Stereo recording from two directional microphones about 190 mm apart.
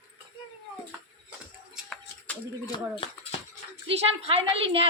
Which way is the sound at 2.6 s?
20° left (ahead or behind).